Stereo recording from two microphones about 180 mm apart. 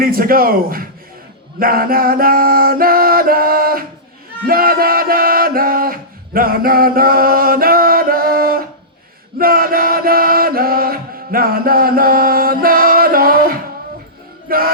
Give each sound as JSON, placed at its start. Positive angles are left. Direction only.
{"t": 0.0, "sound": "mantra", "side_deg": -55}
{"t": 4.4, "sound": "music", "side_deg": -55}
{"t": 9.4, "sound": "chant", "side_deg": -55}
{"t": 14.5, "sound": "music", "side_deg": -55}